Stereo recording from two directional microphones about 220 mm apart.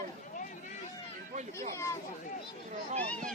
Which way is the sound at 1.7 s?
15° left (ahead or behind).